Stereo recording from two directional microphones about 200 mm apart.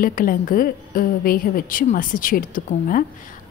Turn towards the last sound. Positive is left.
turn(degrees=45)  # may be behind; listen again after turning